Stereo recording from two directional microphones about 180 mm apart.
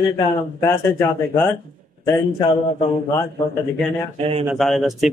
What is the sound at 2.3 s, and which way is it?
Speech, 25° left (ahead or behind).